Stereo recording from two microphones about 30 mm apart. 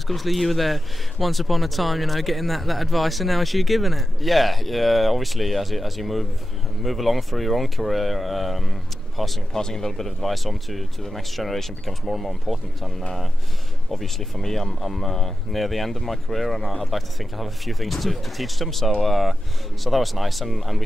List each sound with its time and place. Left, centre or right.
0.1 s speech: centre
9.5 s speech: centre
10.3 s speech: centre
13.9 s speech: centre